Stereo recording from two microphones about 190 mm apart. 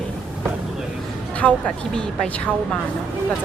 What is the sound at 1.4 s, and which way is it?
A woman's voice, 5° left (ahead or behind).